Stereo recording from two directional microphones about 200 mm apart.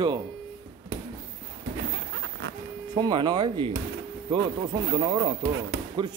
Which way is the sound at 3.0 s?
20° right (ahead or behind).